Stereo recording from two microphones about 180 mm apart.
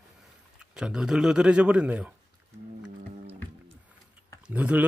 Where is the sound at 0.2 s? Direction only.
5° right (ahead or behind).